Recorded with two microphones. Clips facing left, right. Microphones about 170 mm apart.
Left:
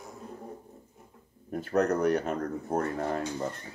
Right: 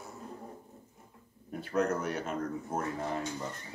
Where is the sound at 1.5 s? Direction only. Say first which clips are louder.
Left 4 dB; 55° left (ahead or behind).